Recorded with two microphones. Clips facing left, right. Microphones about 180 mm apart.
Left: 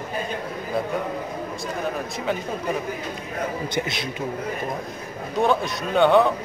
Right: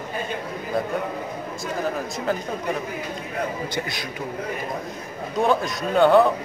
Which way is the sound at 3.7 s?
25° left (ahead or behind).